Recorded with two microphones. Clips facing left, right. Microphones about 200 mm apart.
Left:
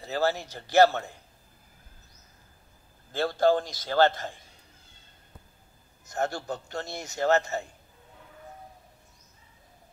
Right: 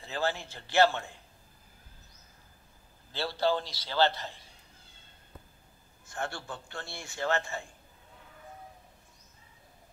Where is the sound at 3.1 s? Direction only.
50° left (ahead or behind).